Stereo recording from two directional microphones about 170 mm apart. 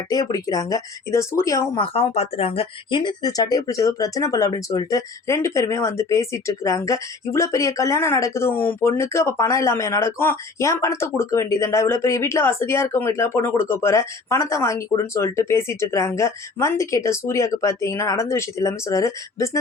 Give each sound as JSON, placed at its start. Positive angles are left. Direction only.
{"t": 0.1, "sound": "speech", "side_deg": 20}
{"t": 1.8, "sound": "speech", "side_deg": 30}